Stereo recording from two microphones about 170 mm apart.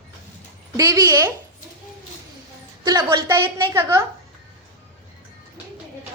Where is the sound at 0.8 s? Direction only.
20° right (ahead or behind).